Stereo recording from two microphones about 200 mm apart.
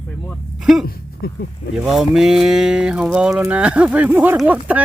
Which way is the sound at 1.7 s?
Centre (ahead or behind).